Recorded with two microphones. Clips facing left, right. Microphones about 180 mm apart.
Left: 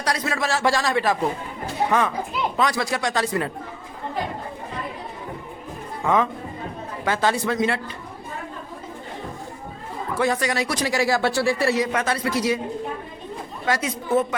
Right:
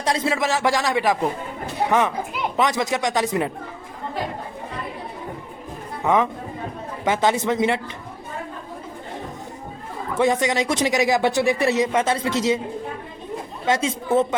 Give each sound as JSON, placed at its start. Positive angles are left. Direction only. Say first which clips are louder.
{"t": 0.0, "sound": "a man's voice", "louder": "right 3 dB", "side_deg": -25}
{"t": 7.0, "sound": "speech", "louder": "right 2 dB", "side_deg": -20}
{"t": 10.2, "sound": "speech", "louder": "right 3 dB", "side_deg": -20}
{"t": 13.7, "sound": "speech", "louder": "right 2 dB", "side_deg": -25}